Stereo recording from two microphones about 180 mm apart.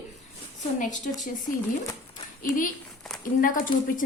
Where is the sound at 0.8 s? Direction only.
45° left (ahead or behind).